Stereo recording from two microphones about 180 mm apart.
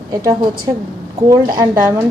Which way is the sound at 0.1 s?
20° right (ahead or behind).